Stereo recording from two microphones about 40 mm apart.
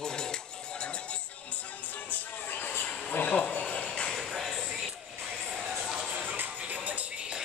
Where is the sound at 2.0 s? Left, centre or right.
Left.